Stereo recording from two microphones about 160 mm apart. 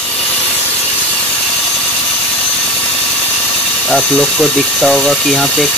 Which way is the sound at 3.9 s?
5° left (ahead or behind).